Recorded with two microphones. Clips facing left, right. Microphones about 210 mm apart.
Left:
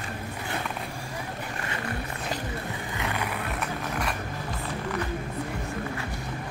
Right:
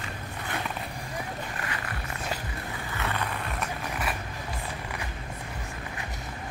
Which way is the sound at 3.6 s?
5° right (ahead or behind).